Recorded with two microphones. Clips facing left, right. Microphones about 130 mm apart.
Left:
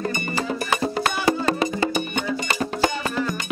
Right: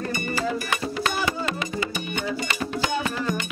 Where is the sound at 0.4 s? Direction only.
35° left (ahead or behind).